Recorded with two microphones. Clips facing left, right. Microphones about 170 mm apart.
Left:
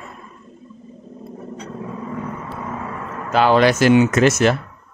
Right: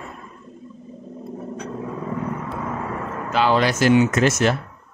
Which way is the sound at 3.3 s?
55° left (ahead or behind).